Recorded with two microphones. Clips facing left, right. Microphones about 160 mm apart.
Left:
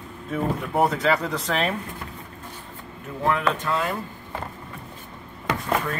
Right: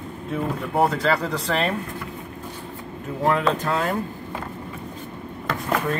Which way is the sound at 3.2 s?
40° right (ahead or behind).